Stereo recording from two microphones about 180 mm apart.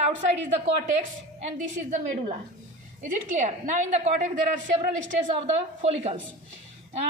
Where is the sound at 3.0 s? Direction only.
40° right (ahead or behind).